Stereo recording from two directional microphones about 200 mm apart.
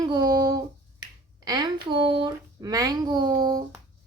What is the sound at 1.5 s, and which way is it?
A child's voice, 20° right (ahead or behind).